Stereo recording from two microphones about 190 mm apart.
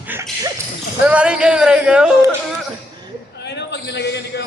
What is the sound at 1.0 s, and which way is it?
Speech, 5° right (ahead or behind).